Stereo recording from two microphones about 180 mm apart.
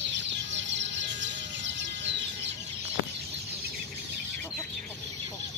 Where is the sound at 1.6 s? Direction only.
85° right.